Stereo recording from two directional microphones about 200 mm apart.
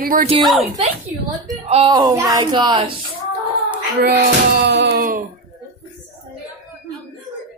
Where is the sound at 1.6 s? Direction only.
30° right (ahead or behind).